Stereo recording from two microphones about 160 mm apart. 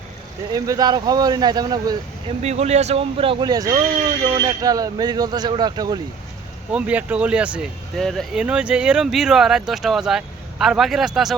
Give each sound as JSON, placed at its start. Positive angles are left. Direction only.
{"t": 0.5, "sound": "speech", "side_deg": -25}
{"t": 2.4, "sound": "speech", "side_deg": -45}
{"t": 6.7, "sound": "speech", "side_deg": -10}